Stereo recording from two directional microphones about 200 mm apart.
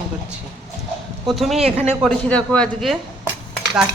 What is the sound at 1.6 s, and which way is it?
Speech, 30° right (ahead or behind).